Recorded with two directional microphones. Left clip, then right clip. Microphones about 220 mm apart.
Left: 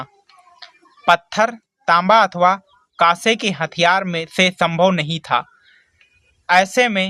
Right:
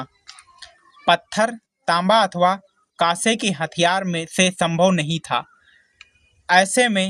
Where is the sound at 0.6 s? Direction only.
15° right (ahead or behind).